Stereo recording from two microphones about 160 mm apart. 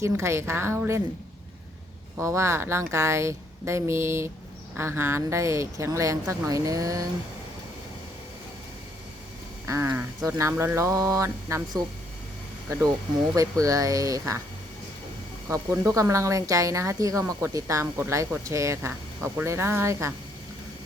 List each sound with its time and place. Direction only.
0.0 s speech: 20° right (ahead or behind)
2.1 s speech: 20° right (ahead or behind)
9.6 s speech: 15° right (ahead or behind)
13.3 s speech: 20° right (ahead or behind)
15.4 s speech: 15° right (ahead or behind)